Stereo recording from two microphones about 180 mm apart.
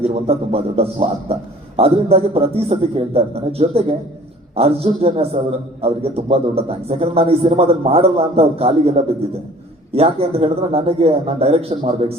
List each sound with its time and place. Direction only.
0.0 s a man's voice: 35° right (ahead or behind)